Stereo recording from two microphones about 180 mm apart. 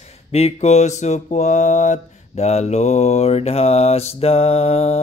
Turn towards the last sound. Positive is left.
turn(degrees=35)  # may be behind; listen again after turning